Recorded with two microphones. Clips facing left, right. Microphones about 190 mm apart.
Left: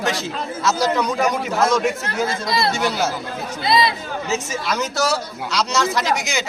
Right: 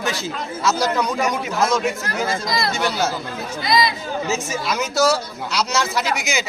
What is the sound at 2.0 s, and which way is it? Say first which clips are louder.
Speech: left 1 dB; 25° left (ahead or behind).